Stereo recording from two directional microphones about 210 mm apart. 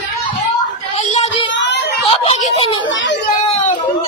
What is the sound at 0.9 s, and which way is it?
Child singing, 30° left (ahead or behind).